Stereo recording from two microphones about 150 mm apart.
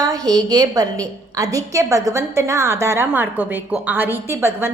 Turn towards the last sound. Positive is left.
turn(degrees=-15)  # may be behind; listen again after turning